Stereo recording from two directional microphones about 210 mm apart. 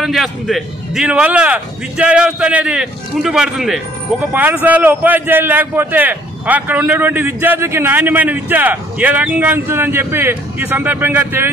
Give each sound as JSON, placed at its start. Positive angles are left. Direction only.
{"t": 0.0, "sound": "a man's voice", "side_deg": 0}